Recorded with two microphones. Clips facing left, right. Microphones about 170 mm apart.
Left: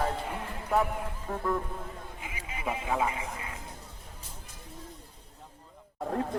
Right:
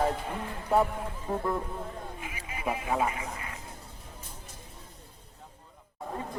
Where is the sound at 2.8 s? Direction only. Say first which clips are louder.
Even; 20° right (ahead or behind).